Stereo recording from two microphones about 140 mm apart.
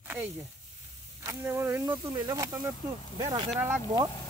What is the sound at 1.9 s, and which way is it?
Speech, 25° right (ahead or behind).